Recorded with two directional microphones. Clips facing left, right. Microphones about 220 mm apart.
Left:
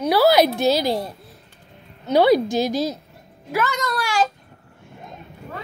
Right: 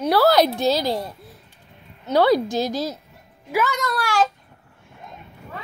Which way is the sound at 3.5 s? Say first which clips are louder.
Right 1 dB; 10° right (ahead or behind).